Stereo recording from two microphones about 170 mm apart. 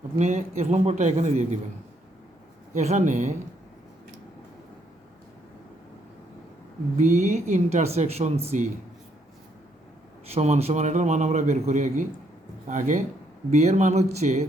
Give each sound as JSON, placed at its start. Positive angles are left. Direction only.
{"t": 0.2, "sound": "speech", "side_deg": -40}
{"t": 2.7, "sound": "a man's voice", "side_deg": -45}
{"t": 6.9, "sound": "speech", "side_deg": -40}
{"t": 10.2, "sound": "a man's voice", "side_deg": -40}